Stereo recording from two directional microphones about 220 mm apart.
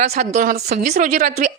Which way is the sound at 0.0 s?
35° right (ahead or behind).